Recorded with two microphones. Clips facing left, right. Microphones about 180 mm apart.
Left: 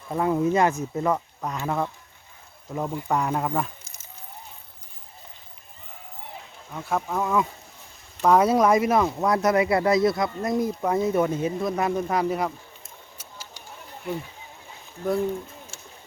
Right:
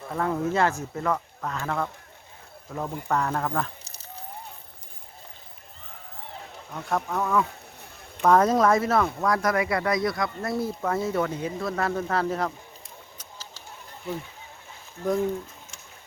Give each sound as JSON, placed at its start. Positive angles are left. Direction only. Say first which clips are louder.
{"t": 0.1, "sound": "speech", "louder": "left 4 dB", "side_deg": 15}
{"t": 6.7, "sound": "speech", "louder": "left 1 dB", "side_deg": 5}
{"t": 13.1, "sound": "a sound", "louder": "left 1 dB", "side_deg": 10}